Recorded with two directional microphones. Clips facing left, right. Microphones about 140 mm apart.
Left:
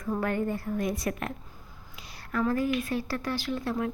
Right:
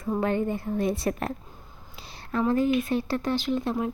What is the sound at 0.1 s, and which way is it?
Speech, 20° right (ahead or behind).